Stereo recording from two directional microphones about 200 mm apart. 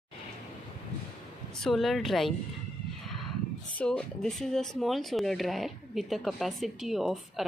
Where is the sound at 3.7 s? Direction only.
5° left (ahead or behind).